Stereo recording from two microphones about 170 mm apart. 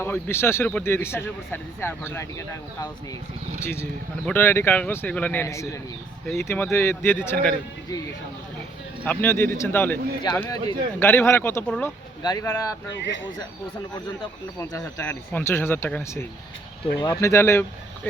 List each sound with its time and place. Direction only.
0.0 s speech: 15° left (ahead or behind)
9.0 s speech: 10° left (ahead or behind)
12.2 s speech: 25° left (ahead or behind)
14.6 s speech: 15° left (ahead or behind)